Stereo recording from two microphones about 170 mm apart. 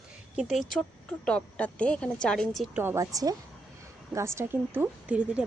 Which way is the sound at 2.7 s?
15° right (ahead or behind).